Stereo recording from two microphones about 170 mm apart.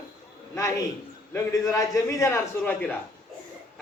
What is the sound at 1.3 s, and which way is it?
A man's voice, 20° left (ahead or behind).